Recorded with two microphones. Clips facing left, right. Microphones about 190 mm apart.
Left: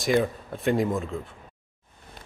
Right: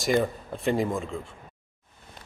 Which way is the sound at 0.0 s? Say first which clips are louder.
Left 1 dB; centre (ahead or behind).